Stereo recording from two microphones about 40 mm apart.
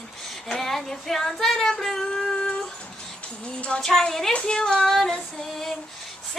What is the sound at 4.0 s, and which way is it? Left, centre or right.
Female singing, centre.